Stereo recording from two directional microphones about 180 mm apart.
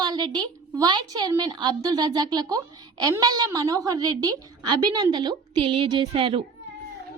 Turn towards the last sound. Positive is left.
turn(degrees=-30)  # may be behind; listen again after turning